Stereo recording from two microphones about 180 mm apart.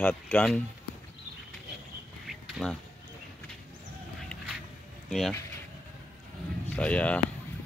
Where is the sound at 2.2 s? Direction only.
5° left (ahead or behind).